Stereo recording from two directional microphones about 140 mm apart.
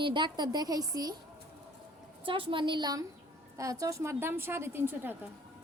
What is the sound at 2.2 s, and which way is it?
A woman's voice, 40° right (ahead or behind).